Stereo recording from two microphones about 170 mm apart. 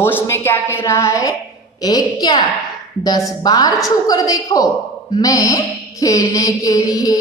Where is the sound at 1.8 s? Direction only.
25° left (ahead or behind).